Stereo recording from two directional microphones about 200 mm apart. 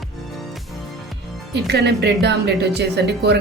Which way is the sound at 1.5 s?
55° right (ahead or behind).